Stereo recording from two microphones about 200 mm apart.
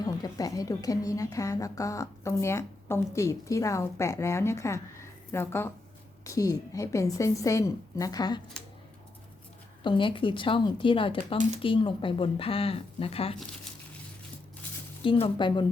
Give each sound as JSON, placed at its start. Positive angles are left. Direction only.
{"t": 0.0, "sound": "a woman's voice", "side_deg": 20}
{"t": 9.8, "sound": "speech", "side_deg": 25}
{"t": 15.0, "sound": "speech", "side_deg": 25}